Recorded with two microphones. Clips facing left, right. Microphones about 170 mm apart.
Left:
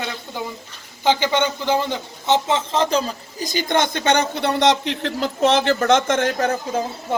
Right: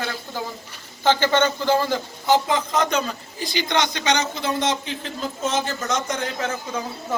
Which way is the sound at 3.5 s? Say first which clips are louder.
Left 3 dB; 45° left (ahead or behind).